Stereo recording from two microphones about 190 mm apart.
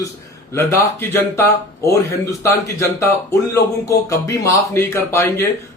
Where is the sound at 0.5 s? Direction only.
15° left (ahead or behind).